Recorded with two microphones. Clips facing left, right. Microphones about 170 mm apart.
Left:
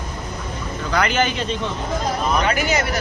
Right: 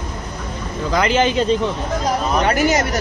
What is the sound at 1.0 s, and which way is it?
Speech, 30° right (ahead or behind).